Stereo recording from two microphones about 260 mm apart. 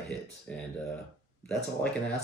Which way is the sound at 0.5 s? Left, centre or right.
Centre.